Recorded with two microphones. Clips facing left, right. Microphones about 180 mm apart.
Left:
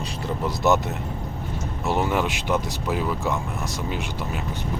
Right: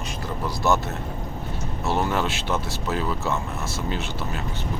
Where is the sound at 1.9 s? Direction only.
15° left (ahead or behind).